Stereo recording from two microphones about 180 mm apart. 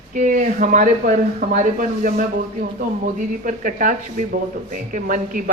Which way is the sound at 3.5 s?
45° right (ahead or behind).